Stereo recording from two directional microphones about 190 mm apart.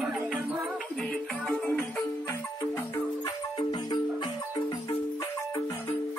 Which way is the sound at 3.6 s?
25° left (ahead or behind).